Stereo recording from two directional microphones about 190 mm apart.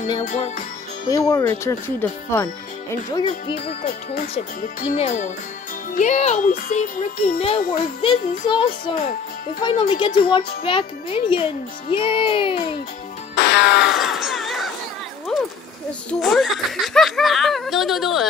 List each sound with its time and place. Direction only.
1.1 s speech: 15° left (ahead or behind)
3.5 s music: 45° left (ahead or behind)
4.9 s a child's voice: 35° left (ahead or behind)
13.3 s music: 60° left (ahead or behind)
13.8 s crowd: centre (ahead or behind)
15.3 s a sound: 5° left (ahead or behind)
16.1 s speech: centre (ahead or behind)